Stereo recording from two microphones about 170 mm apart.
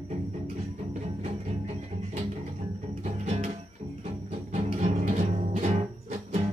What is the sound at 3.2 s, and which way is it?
Music, 40° right (ahead or behind).